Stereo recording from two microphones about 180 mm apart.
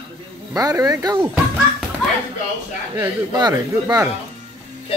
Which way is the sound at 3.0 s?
20° right (ahead or behind).